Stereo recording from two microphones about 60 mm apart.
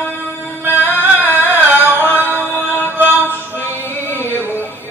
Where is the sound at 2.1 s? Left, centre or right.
Right.